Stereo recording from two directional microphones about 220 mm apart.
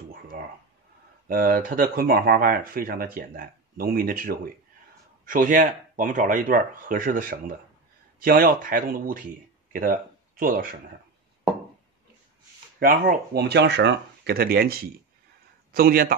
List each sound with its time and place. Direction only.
0.1 s a sound: 40° right (ahead or behind)
1.2 s speech: 40° right (ahead or behind)
12.7 s speech: 40° right (ahead or behind)